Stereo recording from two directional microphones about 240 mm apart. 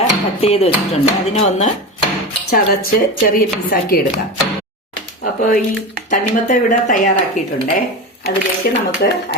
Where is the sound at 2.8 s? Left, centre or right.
Left.